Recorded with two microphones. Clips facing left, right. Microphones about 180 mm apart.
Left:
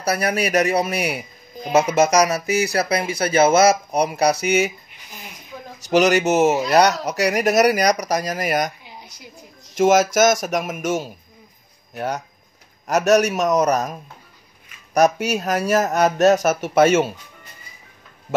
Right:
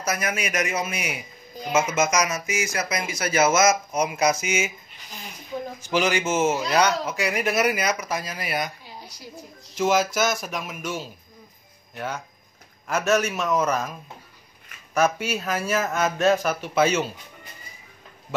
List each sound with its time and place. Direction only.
0.0 s speech: 35° left (ahead or behind)
6.1 s speech: 70° left (ahead or behind)
6.7 s speech: 40° left (ahead or behind)
9.8 s speech: 45° left (ahead or behind)
15.0 s speech: 40° left (ahead or behind)